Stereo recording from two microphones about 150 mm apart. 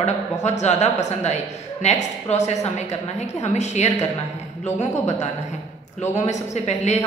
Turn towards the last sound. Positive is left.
turn(degrees=50)  # may be behind; listen again after turning